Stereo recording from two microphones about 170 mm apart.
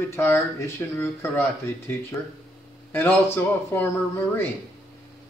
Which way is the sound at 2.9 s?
10° left (ahead or behind).